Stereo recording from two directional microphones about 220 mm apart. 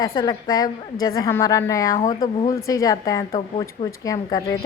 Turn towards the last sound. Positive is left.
turn(degrees=15)  # may be behind; listen again after turning